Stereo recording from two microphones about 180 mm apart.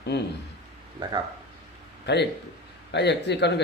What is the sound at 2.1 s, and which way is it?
A man's voice, 65° left (ahead or behind).